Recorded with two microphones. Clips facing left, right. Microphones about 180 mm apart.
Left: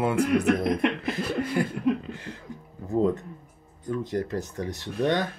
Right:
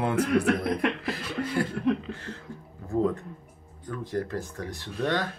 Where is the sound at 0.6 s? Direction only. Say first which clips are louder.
Left 2 dB; 20° left (ahead or behind).